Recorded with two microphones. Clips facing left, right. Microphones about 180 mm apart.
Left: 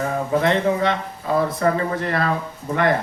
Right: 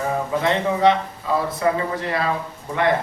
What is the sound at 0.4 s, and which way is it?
A man's voice, 50° left (ahead or behind).